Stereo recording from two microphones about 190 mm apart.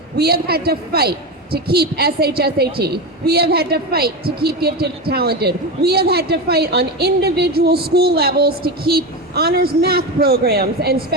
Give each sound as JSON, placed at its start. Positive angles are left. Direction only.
{"t": 0.2, "sound": "a woman's voice", "side_deg": -55}